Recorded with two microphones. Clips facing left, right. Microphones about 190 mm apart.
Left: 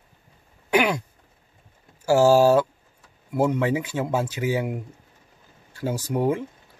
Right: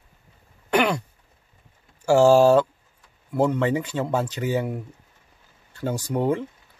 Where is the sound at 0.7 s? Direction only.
10° left (ahead or behind).